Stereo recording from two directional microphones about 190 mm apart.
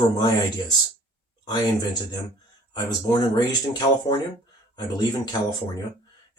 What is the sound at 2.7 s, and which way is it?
Speech, 20° left (ahead or behind).